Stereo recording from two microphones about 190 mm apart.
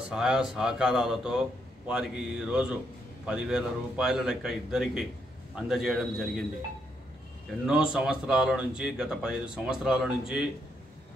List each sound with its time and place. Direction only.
0.1 s speech: 5° right (ahead or behind)
7.6 s speech: 5° right (ahead or behind)